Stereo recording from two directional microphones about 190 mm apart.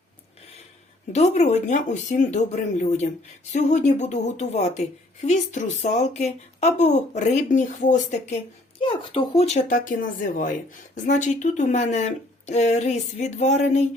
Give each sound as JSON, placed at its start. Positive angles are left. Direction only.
{"t": 1.1, "sound": "a woman's voice", "side_deg": 35}
{"t": 8.8, "sound": "a woman's voice", "side_deg": 25}